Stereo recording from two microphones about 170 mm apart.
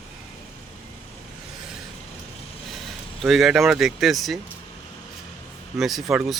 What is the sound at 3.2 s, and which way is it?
Speech, centre (ahead or behind).